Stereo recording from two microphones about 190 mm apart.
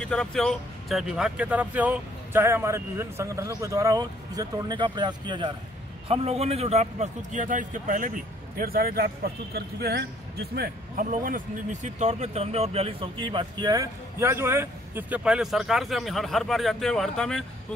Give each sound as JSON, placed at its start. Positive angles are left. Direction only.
{"t": 0.0, "sound": "a man's voice", "side_deg": 5}
{"t": 11.1, "sound": "speech", "side_deg": -45}